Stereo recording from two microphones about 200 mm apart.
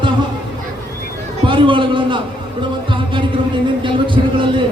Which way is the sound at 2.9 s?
25° right (ahead or behind).